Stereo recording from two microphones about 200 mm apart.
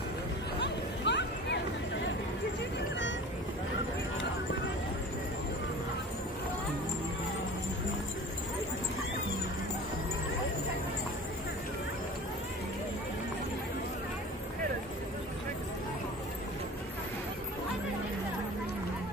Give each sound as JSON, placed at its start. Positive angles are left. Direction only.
{"t": 0.6, "sound": "chatter", "side_deg": 60}